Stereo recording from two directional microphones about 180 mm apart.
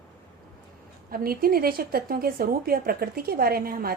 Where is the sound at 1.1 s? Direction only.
55° right (ahead or behind).